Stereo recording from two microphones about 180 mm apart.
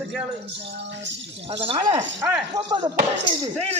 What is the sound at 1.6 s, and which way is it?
Speech, 30° right (ahead or behind).